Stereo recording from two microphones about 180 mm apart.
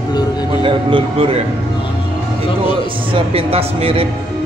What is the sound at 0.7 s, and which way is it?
Speech, 30° right (ahead or behind).